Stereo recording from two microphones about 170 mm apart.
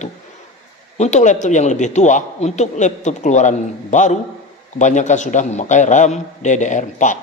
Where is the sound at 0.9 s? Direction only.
45° left (ahead or behind).